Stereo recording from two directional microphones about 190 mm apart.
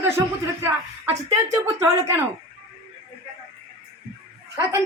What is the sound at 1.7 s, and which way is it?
Speech, 15° right (ahead or behind).